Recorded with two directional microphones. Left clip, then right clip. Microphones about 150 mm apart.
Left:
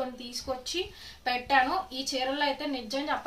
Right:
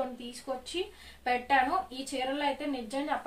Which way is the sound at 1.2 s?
15° right (ahead or behind).